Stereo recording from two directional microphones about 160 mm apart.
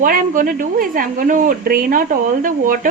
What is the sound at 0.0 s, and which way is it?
A woman's voice, 60° right (ahead or behind).